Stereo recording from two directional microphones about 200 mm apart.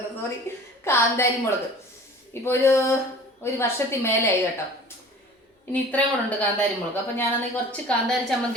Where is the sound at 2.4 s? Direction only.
10° left (ahead or behind).